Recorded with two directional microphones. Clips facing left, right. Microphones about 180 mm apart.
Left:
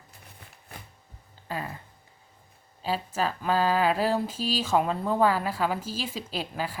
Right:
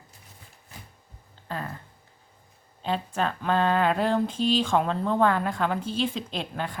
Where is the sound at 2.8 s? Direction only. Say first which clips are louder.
Right 1 dB; 5° left (ahead or behind).